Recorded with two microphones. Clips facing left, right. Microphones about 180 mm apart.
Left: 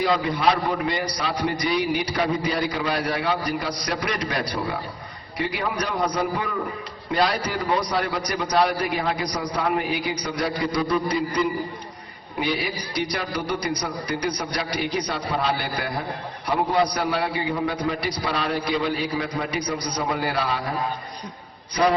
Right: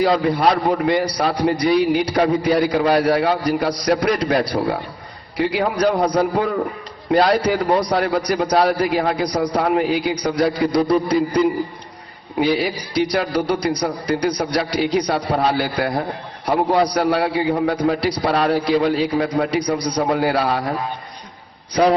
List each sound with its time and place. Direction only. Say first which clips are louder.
0.0 s a man's voice: right 5 dB; 55° right (ahead or behind)
10.8 s a man's voice: right 7 dB; 35° right (ahead or behind)
12.4 s a man's voice: right 7 dB; 60° right (ahead or behind)